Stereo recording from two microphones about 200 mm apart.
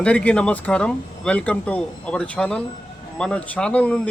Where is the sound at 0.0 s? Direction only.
5° left (ahead or behind).